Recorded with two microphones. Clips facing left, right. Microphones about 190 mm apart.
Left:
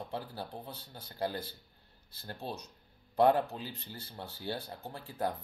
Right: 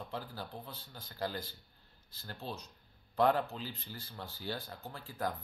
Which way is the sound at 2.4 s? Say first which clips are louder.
Left 2 dB; 60° left (ahead or behind).